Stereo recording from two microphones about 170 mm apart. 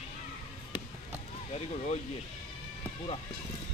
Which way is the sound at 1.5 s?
40° left (ahead or behind).